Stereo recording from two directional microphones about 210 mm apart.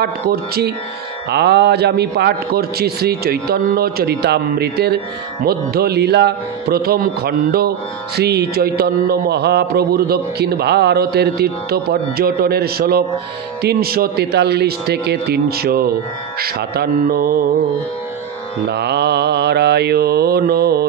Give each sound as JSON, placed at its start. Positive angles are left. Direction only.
{"t": 0.0, "sound": "a man's voice", "side_deg": -50}
{"t": 18.7, "sound": "a man's voice", "side_deg": -50}